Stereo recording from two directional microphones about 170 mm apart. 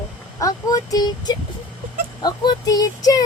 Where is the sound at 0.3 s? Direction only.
20° left (ahead or behind).